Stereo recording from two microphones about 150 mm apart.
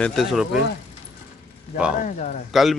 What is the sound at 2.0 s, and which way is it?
Speech, 55° left (ahead or behind).